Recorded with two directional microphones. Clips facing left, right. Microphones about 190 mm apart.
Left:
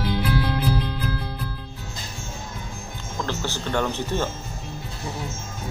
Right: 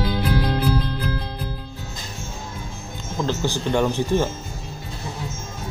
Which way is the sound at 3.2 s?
15° right (ahead or behind).